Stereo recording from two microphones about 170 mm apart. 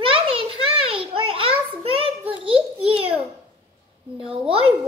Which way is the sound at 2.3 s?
30° right (ahead or behind).